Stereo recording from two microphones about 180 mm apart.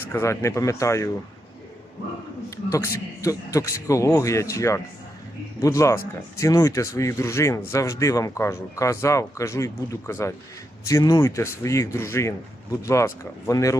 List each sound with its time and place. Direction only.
0.1 s speech: 15° left (ahead or behind)
2.7 s speech: 15° left (ahead or behind)